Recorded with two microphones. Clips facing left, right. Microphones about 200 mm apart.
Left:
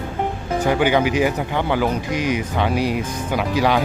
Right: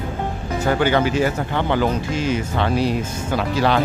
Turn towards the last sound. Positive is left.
turn(degrees=10)  # may be behind; listen again after turning